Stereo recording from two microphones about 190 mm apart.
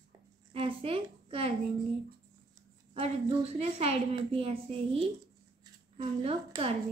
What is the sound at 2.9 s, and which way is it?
A woman's voice, 30° right (ahead or behind).